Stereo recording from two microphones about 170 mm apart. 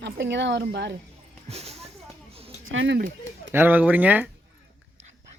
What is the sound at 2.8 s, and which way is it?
Speech, 90° right.